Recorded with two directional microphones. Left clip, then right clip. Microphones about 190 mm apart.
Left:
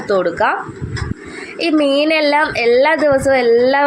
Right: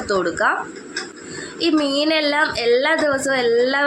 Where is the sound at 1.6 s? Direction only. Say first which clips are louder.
Left 5 dB; 15° left (ahead or behind).